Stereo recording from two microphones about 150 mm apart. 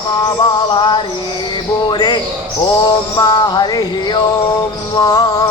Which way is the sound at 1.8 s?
30° left (ahead or behind).